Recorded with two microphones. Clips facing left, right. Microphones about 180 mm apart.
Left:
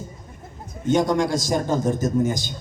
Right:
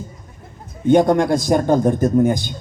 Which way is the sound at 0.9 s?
55° right (ahead or behind).